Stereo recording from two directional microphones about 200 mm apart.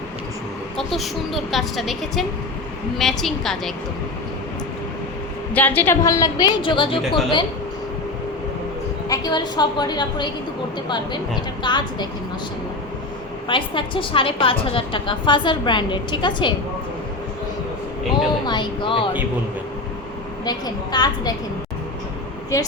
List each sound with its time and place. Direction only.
0.8 s a woman's voice: centre (ahead or behind)
5.5 s a woman's voice: 10° left (ahead or behind)
9.0 s a woman's voice: 20° left (ahead or behind)
13.5 s a woman's voice: 25° left (ahead or behind)
18.4 s a woman's voice: 20° left (ahead or behind)
20.4 s a woman's voice: 20° left (ahead or behind)
22.5 s a woman's voice: 15° left (ahead or behind)